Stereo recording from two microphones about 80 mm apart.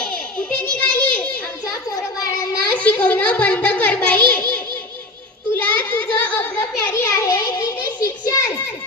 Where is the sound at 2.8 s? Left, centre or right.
Centre.